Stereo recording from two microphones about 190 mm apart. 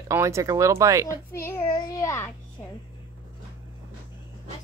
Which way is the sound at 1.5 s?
20° left (ahead or behind).